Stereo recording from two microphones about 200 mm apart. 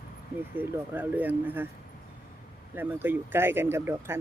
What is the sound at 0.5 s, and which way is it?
Speech, 10° right (ahead or behind).